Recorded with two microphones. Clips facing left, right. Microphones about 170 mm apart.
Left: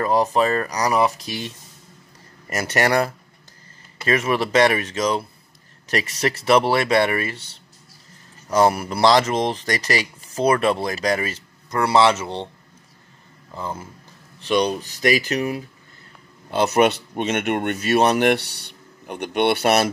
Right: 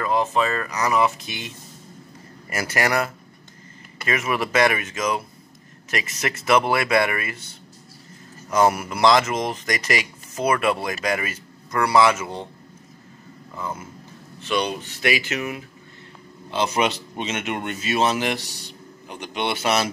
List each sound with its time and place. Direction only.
0.0 s speech: 40° left (ahead or behind)
2.6 s speech: 30° left (ahead or behind)
8.5 s speech: 30° left (ahead or behind)
13.6 s speech: 30° left (ahead or behind)
16.4 s speech: 55° left (ahead or behind)